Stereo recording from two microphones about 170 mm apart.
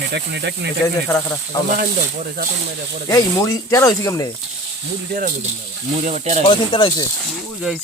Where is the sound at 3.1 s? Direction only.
20° left (ahead or behind).